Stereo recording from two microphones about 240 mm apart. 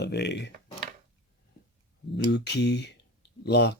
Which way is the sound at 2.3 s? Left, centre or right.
Left.